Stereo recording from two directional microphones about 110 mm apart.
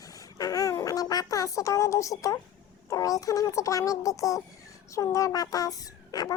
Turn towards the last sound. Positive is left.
turn(degrees=35)  # may be behind; listen again after turning